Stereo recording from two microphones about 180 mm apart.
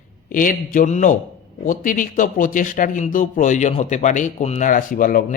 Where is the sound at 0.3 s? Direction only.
50° left (ahead or behind).